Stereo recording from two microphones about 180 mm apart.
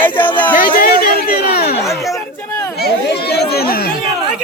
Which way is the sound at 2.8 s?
65° left (ahead or behind).